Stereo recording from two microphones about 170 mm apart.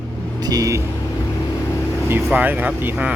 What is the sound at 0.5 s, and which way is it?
Speech, 20° right (ahead or behind).